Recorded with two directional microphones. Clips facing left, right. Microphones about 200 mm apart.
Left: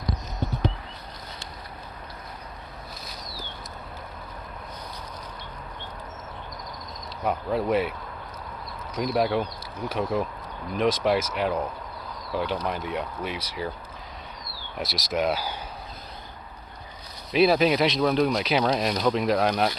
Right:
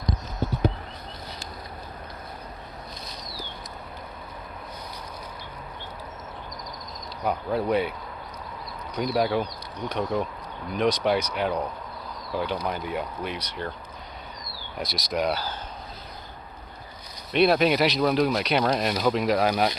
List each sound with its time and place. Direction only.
7.2 s speech: centre (ahead or behind)
9.0 s speech: centre (ahead or behind)
14.8 s speech: centre (ahead or behind)
17.3 s speech: centre (ahead or behind)